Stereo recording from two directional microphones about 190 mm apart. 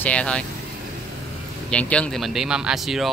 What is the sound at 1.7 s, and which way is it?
Speech, 5° left (ahead or behind).